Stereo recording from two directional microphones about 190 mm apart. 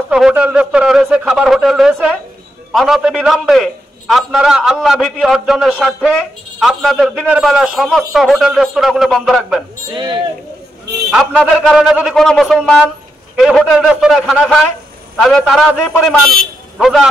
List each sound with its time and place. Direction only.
0.1 s a man's voice: 5° right (ahead or behind)
9.9 s speech: 25° right (ahead or behind)
11.1 s a man's voice: centre (ahead or behind)